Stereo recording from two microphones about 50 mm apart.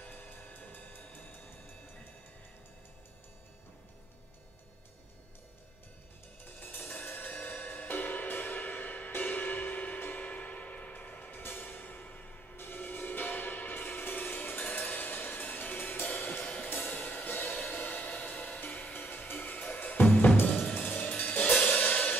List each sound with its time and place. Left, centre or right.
0.0 s music: left
6.6 s music: left
11.3 s music: left
17.8 s a sound: left
18.1 s music: left